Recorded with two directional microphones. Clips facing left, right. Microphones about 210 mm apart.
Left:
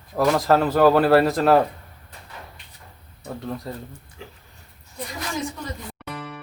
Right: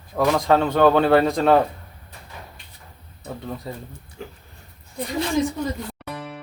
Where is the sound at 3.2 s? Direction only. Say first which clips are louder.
Left 1 dB; centre (ahead or behind).